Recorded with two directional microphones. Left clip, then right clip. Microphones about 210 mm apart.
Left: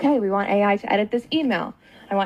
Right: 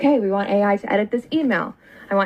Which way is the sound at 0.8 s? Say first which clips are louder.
Right 1 dB; 15° right (ahead or behind).